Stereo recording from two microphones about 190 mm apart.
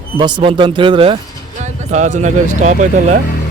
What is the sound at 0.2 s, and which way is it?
Speech, 25° right (ahead or behind).